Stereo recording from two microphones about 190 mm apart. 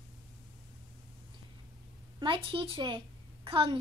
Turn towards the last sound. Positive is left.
turn(degrees=-25)  # may be behind; listen again after turning